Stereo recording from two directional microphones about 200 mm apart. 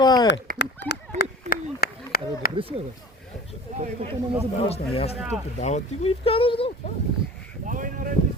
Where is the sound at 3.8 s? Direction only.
35° right (ahead or behind).